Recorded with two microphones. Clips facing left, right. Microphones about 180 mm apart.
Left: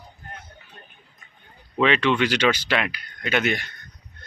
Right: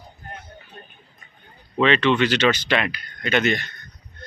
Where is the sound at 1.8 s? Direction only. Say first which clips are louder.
Right 2 dB; 10° left (ahead or behind).